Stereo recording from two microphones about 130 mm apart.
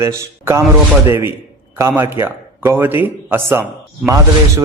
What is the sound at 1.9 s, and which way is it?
A man's voice, 15° right (ahead or behind).